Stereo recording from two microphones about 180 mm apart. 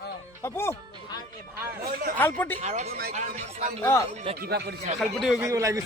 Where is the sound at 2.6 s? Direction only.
40° right (ahead or behind).